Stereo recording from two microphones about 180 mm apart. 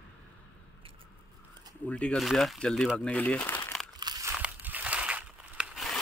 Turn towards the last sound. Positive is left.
turn(degrees=0)  # may be behind; listen again after turning